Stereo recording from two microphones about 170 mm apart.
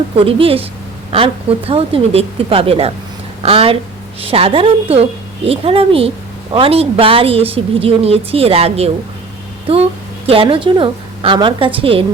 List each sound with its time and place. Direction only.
0.2 s a woman's voice: 30° right (ahead or behind)
10.2 s a woman's voice: 30° right (ahead or behind)